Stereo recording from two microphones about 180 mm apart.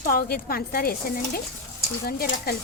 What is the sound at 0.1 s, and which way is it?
Speech, 55° left (ahead or behind).